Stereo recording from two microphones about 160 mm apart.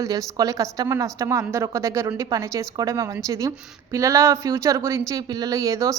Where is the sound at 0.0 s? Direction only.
20° right (ahead or behind).